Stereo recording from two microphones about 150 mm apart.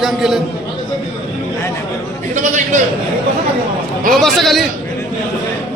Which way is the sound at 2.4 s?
55° right (ahead or behind).